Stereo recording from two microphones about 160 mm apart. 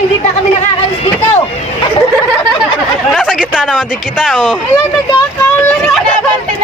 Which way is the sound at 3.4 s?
5° right (ahead or behind).